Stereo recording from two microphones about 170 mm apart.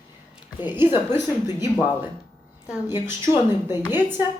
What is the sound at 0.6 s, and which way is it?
Speech, 10° right (ahead or behind).